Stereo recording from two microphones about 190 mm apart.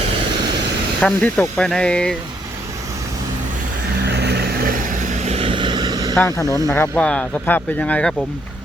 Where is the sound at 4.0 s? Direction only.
60° right (ahead or behind); by 6.1 s 20° right (ahead or behind).